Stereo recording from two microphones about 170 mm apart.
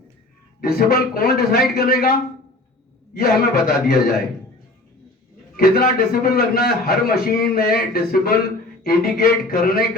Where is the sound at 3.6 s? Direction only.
65° left (ahead or behind).